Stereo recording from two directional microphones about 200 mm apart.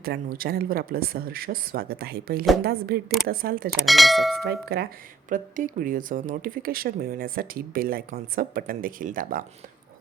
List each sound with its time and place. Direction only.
0.0 s speech: 50° right (ahead or behind)
3.8 s speech: centre (ahead or behind)
4.4 s speech: 50° right (ahead or behind)
5.3 s speech: 40° right (ahead or behind)